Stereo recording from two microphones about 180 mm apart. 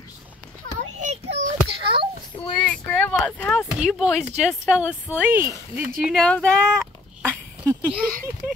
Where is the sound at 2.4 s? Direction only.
30° left (ahead or behind).